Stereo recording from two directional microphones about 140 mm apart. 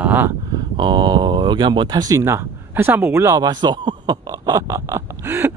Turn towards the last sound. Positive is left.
turn(degrees=-15)  # may be behind; listen again after turning